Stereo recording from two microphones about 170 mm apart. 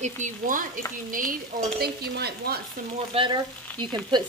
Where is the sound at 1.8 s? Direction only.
70° right (ahead or behind).